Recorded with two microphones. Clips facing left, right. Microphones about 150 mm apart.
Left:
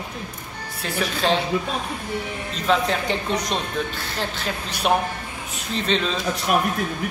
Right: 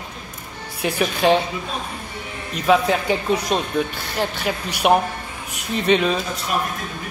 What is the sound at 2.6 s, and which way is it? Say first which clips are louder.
Speech: right 4 dB; 10° right (ahead or behind).